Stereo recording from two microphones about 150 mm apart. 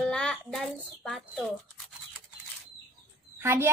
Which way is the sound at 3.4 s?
15° right (ahead or behind).